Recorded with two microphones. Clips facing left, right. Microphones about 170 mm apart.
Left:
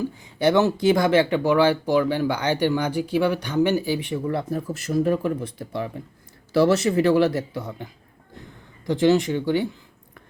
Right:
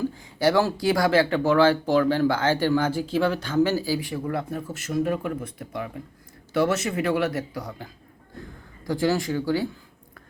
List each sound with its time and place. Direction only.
0.3 s speech: 20° left (ahead or behind)
8.9 s speech: 20° left (ahead or behind)